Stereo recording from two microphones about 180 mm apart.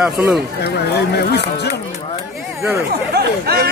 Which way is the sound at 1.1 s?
65° left (ahead or behind).